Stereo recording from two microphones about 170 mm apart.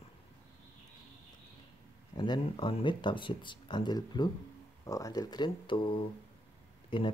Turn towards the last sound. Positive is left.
turn(degrees=30)  # may be behind; listen again after turning